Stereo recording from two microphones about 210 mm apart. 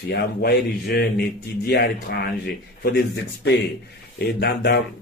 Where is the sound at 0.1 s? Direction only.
50° left (ahead or behind).